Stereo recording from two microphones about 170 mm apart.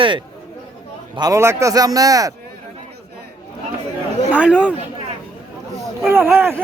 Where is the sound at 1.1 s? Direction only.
20° right (ahead or behind).